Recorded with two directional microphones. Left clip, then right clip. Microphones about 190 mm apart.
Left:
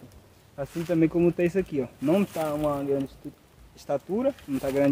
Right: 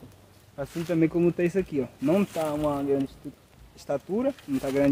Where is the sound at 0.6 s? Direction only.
10° left (ahead or behind).